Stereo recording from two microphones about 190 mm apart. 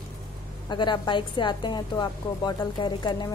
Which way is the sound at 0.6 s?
25° left (ahead or behind).